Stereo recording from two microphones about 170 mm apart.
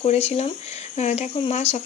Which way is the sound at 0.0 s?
35° left (ahead or behind).